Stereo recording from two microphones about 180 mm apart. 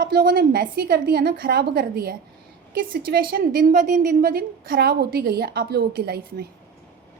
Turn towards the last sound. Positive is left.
turn(degrees=-60)  # may be behind; listen again after turning